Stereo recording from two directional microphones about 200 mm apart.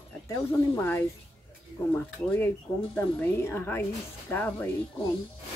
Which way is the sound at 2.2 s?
10° left (ahead or behind).